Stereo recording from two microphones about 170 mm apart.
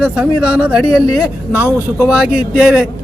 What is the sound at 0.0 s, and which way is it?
Speech, 5° right (ahead or behind).